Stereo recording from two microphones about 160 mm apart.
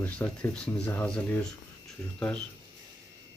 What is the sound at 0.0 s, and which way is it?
Speech, 10° left (ahead or behind).